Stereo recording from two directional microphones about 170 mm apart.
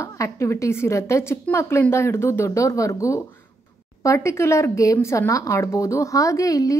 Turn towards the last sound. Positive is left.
turn(degrees=20)  # may be behind; listen again after turning